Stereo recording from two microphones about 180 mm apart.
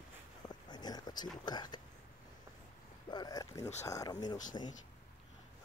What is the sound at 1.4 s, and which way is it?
Speech, 25° left (ahead or behind).